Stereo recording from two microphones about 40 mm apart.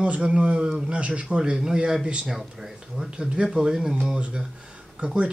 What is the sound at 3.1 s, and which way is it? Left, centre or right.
Speech, right.